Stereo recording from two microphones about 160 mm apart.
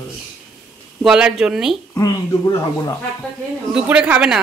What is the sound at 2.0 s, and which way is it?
Speech, 25° left (ahead or behind).